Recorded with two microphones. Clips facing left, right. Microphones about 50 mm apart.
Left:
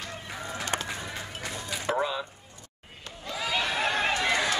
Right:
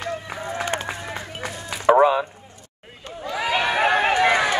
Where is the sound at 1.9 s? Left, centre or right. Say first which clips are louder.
Right 14 dB; right.